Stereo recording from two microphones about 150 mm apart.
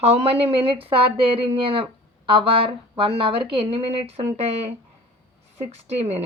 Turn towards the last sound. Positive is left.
turn(degrees=-45)  # may be behind; listen again after turning